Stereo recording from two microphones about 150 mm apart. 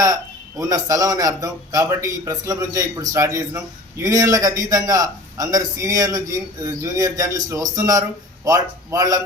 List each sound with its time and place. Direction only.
0.7 s a man's voice: 25° right (ahead or behind)